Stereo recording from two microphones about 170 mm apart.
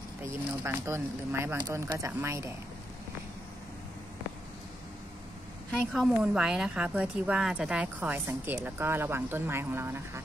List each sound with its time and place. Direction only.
0.8 s a woman's voice: 15° right (ahead or behind)
5.7 s a woman's voice: 5° right (ahead or behind)